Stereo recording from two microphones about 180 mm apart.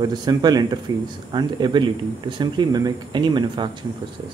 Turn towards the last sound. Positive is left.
turn(degrees=-25)  # may be behind; listen again after turning